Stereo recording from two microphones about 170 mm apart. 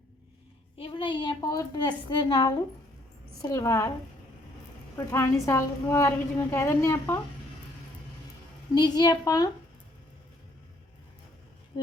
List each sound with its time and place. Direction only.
0.8 s a woman's voice: 30° left (ahead or behind)
4.9 s a woman's voice: 15° left (ahead or behind)
8.7 s a woman's voice: 25° left (ahead or behind)